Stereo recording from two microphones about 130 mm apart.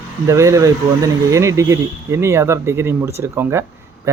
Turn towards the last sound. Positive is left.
turn(degrees=-20)  # may be behind; listen again after turning